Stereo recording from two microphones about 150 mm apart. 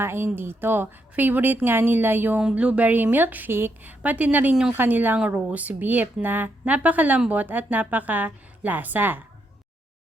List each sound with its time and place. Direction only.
0.0 s speech: 15° right (ahead or behind)